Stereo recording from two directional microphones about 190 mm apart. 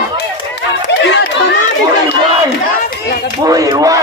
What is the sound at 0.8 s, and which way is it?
Chatter, 70° left (ahead or behind).